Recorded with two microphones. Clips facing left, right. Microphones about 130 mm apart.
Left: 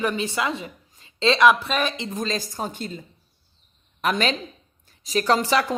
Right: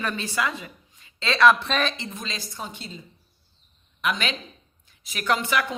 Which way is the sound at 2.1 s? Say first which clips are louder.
Left 8 dB; 40° left (ahead or behind).